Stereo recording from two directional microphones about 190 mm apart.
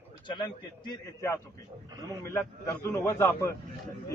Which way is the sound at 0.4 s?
20° left (ahead or behind).